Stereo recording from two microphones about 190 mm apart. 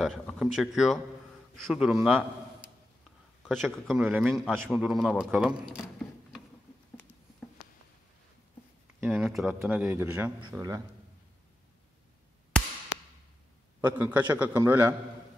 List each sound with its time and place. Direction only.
0.0 s a man's voice: centre (ahead or behind)
9.0 s a man's voice: 5° right (ahead or behind)
13.7 s a man's voice: 10° right (ahead or behind)